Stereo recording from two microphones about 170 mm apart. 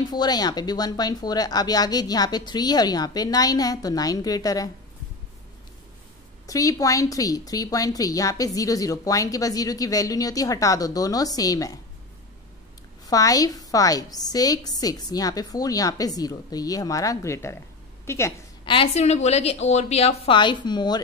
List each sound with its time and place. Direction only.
0.1 s a woman's voice: 25° left (ahead or behind)
6.4 s a woman's voice: 20° left (ahead or behind)
13.0 s a woman's voice: 20° left (ahead or behind)
18.7 s a woman's voice: 35° left (ahead or behind)